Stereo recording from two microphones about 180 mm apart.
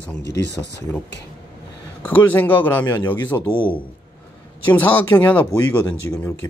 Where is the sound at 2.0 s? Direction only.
10° left (ahead or behind).